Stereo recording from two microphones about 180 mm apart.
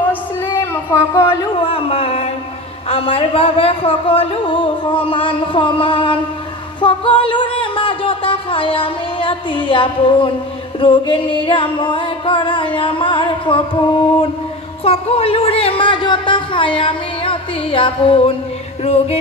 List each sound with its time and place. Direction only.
1.1 s speech: 15° left (ahead or behind)
1.6 s speech: 30° left (ahead or behind)
10.8 s music: 30° left (ahead or behind)
14.9 s speech: 35° left (ahead or behind)